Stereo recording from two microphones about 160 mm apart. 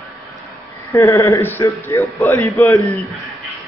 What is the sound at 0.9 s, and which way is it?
A man's voice, 20° left (ahead or behind).